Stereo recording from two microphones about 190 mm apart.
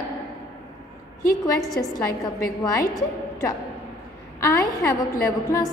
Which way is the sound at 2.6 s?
15° left (ahead or behind).